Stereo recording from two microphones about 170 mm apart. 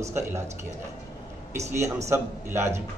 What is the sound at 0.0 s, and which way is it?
Speech, 15° right (ahead or behind).